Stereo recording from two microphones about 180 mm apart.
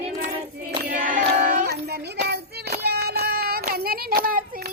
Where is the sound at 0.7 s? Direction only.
50° right (ahead or behind).